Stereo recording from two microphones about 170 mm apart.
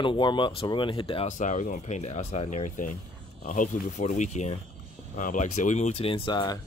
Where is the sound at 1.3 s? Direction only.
45° left (ahead or behind).